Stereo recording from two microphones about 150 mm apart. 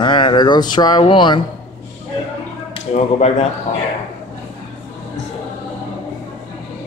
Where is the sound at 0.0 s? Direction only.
35° left (ahead or behind).